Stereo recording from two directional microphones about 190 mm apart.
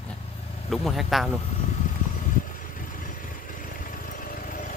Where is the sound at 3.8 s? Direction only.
45° left (ahead or behind).